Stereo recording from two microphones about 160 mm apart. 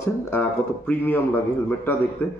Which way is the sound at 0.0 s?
10° left (ahead or behind).